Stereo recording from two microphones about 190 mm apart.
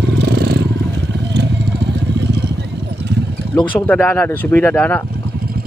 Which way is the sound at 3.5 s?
5° left (ahead or behind).